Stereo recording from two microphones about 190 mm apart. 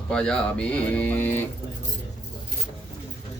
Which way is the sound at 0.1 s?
5° left (ahead or behind).